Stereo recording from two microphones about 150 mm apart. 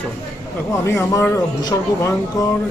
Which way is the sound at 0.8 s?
20° left (ahead or behind).